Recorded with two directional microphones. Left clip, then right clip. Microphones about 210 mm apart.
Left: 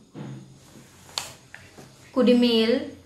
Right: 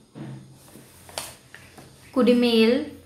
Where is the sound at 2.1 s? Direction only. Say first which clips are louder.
Right 1 dB; 20° right (ahead or behind).